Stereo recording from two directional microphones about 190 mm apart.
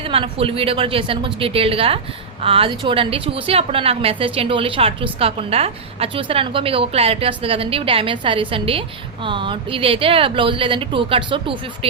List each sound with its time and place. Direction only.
0.0 s a woman's voice: 30° right (ahead or behind)